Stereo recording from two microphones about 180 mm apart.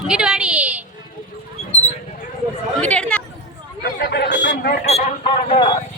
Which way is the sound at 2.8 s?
5° left (ahead or behind).